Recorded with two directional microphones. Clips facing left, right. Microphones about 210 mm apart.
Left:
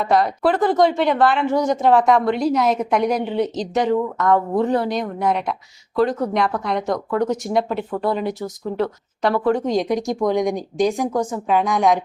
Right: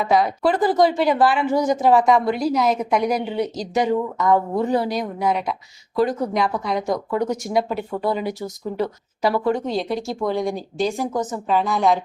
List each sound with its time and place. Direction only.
0.0 s speech: centre (ahead or behind)
9.6 s speech: 15° left (ahead or behind)
11.5 s speech: centre (ahead or behind)